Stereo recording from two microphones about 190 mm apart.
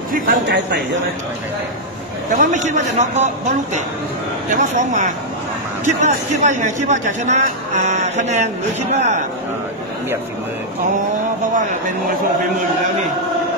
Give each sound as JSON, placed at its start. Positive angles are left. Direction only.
{"t": 0.1, "sound": "a man's voice", "side_deg": -55}
{"t": 2.3, "sound": "speech", "side_deg": -40}